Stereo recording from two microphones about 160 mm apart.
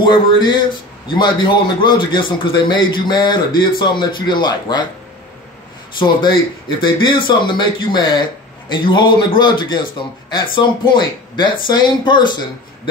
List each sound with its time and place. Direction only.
0.0 s a man's voice: 25° left (ahead or behind)
5.9 s a man's voice: 30° left (ahead or behind)